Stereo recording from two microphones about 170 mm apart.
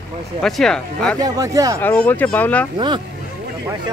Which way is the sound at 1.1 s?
20° right (ahead or behind).